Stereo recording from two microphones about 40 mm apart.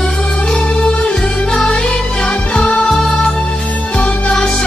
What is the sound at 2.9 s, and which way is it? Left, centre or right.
Music, centre.